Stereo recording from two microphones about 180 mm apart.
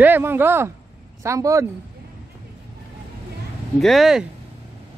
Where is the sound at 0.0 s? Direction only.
10° right (ahead or behind).